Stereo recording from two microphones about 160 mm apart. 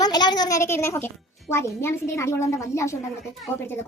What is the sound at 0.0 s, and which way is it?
A child's voice, 25° left (ahead or behind).